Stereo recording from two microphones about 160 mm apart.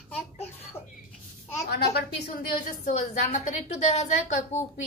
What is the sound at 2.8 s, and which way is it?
A woman's voice, 50° left (ahead or behind).